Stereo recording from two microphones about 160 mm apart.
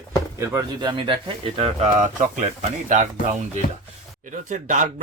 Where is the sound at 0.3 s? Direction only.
20° right (ahead or behind); by 2.0 s 40° right (ahead or behind).